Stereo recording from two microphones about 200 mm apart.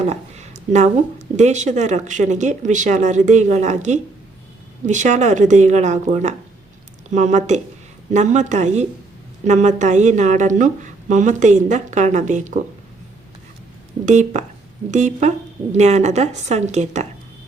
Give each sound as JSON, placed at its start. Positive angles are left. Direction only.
{"t": 0.0, "sound": "a sound", "side_deg": -35}
{"t": 1.4, "sound": "speech", "side_deg": -35}
{"t": 14.0, "sound": "speech", "side_deg": -35}